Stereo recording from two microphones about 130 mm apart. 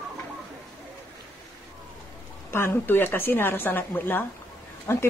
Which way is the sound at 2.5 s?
15° left (ahead or behind).